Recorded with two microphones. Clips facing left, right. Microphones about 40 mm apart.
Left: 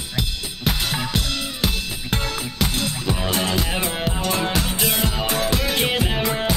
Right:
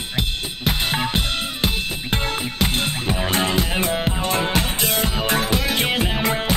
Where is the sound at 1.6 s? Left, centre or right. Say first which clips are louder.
Right 2 dB; right.